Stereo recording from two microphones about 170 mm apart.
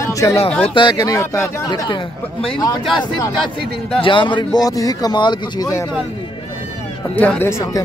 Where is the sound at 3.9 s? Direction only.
30° left (ahead or behind).